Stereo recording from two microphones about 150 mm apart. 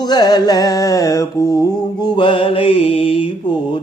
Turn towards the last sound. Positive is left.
turn(degrees=40)  # may be behind; listen again after turning